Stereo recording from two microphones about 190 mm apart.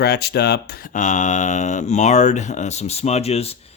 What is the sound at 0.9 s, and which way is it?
Speech, 40° left (ahead or behind).